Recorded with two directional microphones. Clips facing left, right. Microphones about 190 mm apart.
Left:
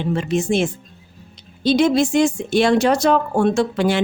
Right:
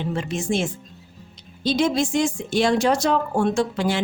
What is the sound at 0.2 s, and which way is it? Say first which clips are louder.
A woman's voice: left 5 dB; 65° left (ahead or behind).